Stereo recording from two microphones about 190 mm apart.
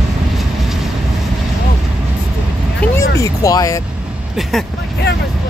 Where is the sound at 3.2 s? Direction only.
15° left (ahead or behind).